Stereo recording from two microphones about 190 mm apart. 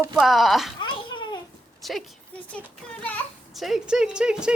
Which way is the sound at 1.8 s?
Centre (ahead or behind).